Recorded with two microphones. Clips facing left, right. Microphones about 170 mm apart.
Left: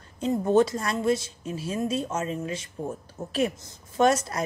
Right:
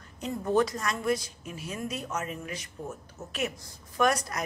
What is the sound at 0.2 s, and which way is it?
A woman's voice, 25° left (ahead or behind).